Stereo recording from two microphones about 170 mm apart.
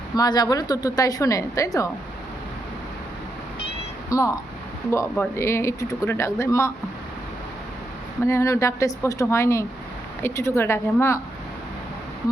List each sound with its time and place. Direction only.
0.2 s speech: 20° left (ahead or behind)
4.1 s speech: 20° left (ahead or behind)
8.2 s speech: 15° left (ahead or behind)